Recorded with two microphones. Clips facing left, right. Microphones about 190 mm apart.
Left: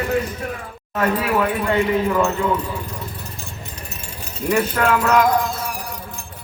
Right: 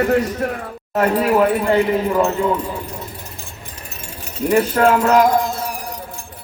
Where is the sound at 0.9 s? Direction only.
40° right (ahead or behind).